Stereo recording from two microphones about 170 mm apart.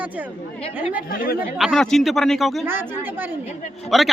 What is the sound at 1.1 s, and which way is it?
Speech, 60° left (ahead or behind).